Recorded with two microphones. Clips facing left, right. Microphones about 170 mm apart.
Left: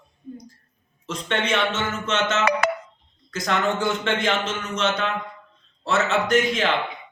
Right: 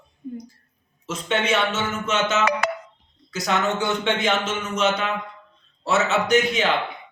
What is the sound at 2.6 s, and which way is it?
Ringtone, 60° left (ahead or behind).